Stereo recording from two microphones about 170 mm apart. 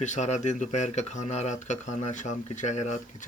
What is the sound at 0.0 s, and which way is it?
Speech, 45° left (ahead or behind).